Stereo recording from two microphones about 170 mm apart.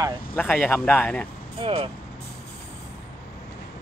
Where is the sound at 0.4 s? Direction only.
5° left (ahead or behind).